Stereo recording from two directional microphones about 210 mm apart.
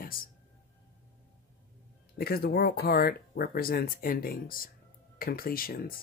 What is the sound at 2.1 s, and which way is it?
Speech, 45° left (ahead or behind).